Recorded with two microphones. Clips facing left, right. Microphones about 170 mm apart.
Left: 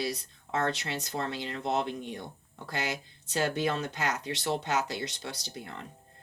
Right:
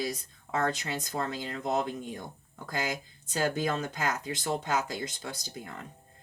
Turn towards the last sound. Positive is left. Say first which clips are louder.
# even
turn(degrees=-45)  # may be behind; listen again after turning